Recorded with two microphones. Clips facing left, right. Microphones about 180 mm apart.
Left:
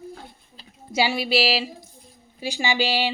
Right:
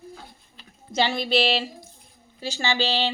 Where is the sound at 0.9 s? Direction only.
10° left (ahead or behind).